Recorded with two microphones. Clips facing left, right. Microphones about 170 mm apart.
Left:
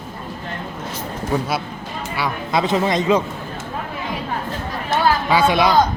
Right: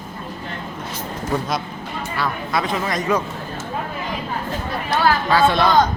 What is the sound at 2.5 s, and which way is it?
Speech, 25° left (ahead or behind).